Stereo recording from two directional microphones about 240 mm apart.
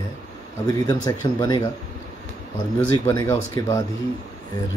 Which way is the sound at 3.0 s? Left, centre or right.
Centre.